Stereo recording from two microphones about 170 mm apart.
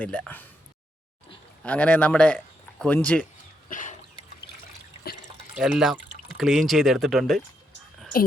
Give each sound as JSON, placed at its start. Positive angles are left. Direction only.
{"t": 0.0, "sound": "speech", "side_deg": 10}
{"t": 1.6, "sound": "speech", "side_deg": 10}
{"t": 3.7, "sound": "a sound", "side_deg": 50}
{"t": 5.5, "sound": "speech", "side_deg": -5}